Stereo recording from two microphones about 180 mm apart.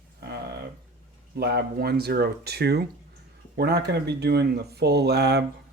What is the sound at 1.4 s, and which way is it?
Speech, 60° right (ahead or behind).